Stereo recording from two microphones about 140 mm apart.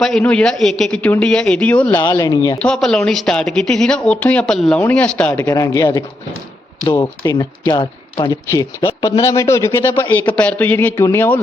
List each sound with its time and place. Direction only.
0.0 s speech: 5° left (ahead or behind)
2.1 s speech: 25° left (ahead or behind)
2.6 s a man's voice: 5° left (ahead or behind)
5.5 s speech: 20° left (ahead or behind)
8.4 s speech: 20° left (ahead or behind)
8.9 s speech: 35° left (ahead or behind)
9.2 s a man's voice: 20° left (ahead or behind)